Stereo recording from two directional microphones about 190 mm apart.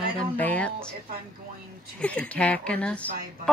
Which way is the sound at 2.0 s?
5° left (ahead or behind).